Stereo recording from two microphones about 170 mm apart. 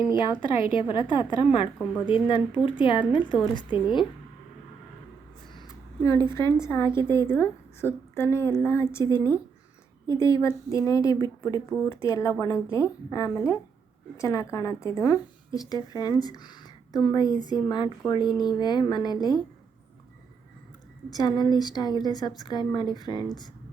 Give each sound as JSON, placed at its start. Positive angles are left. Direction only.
{"t": 0.7, "sound": "a woman's voice", "side_deg": 30}
{"t": 1.8, "sound": "a woman's voice", "side_deg": 5}
{"t": 2.0, "sound": "a woman's voice", "side_deg": 30}
{"t": 5.5, "sound": "a sound", "side_deg": 20}
{"t": 6.7, "sound": "a woman's voice", "side_deg": 15}
{"t": 21.2, "sound": "a woman's voice", "side_deg": 25}